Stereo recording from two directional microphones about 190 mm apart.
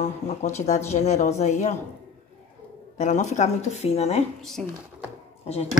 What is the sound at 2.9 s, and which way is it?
Speech, 40° left (ahead or behind).